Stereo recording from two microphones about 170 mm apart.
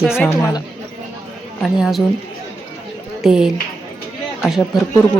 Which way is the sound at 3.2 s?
5° right (ahead or behind).